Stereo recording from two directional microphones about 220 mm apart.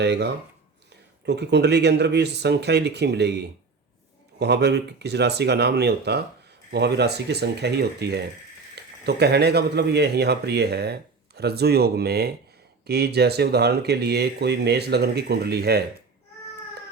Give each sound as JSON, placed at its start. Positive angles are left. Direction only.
{"t": 0.0, "sound": "speech", "side_deg": -50}